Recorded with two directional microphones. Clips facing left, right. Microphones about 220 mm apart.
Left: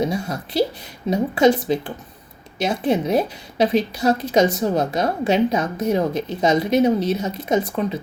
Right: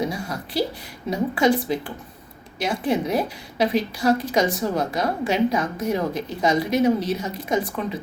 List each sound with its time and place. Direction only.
0.1 s a woman's voice: 25° left (ahead or behind)